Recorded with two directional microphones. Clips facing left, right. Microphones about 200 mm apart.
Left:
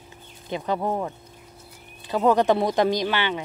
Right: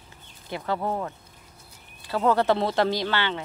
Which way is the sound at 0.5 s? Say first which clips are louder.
Left 2 dB; 15° left (ahead or behind).